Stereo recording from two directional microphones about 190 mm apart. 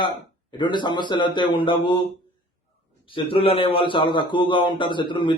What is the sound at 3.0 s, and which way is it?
A man's voice, 25° left (ahead or behind).